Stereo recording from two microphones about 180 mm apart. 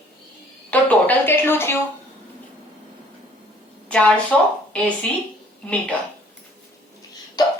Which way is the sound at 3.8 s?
5° left (ahead or behind).